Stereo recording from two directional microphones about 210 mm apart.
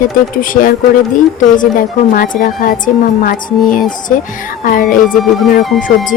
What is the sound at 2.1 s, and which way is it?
Speech, 40° left (ahead or behind).